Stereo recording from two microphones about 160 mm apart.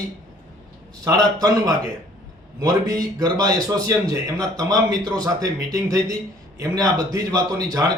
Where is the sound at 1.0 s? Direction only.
25° right (ahead or behind).